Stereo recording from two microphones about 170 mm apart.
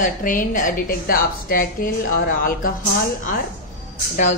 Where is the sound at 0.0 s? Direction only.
50° left (ahead or behind).